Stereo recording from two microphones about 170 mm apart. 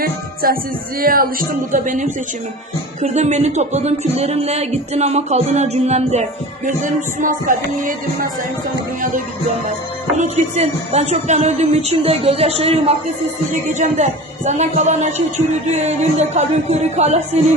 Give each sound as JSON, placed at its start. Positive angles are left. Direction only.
{"t": 0.0, "sound": "speech", "side_deg": -60}
{"t": 6.7, "sound": "speech", "side_deg": -50}
{"t": 10.2, "sound": "speech", "side_deg": -40}
{"t": 13.5, "sound": "speech", "side_deg": -45}